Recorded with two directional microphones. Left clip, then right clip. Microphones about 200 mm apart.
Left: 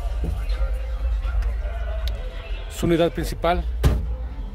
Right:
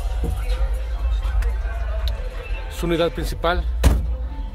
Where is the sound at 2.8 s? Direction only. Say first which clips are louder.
Left 1 dB; 15° left (ahead or behind).